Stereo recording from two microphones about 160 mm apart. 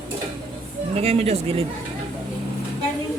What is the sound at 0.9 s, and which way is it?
Speech, 40° right (ahead or behind).